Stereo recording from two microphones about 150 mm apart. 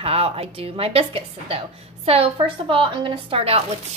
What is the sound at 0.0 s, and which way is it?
A woman's voice, 40° right (ahead or behind).